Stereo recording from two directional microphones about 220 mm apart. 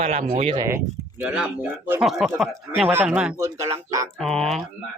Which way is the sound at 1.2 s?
5° right (ahead or behind).